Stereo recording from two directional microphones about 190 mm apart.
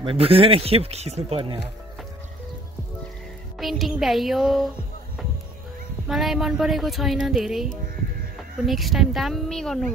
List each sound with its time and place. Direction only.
0.0 s speech: 30° right (ahead or behind)
3.5 s speech: centre (ahead or behind)
6.0 s speech: centre (ahead or behind)